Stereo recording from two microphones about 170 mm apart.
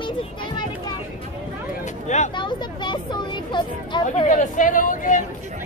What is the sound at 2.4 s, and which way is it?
Speech, 25° left (ahead or behind).